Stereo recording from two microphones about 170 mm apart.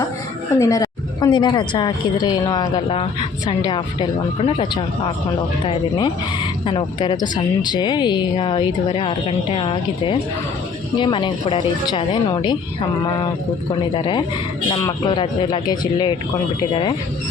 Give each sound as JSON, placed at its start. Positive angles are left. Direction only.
{"t": 0.6, "sound": "speech", "side_deg": 20}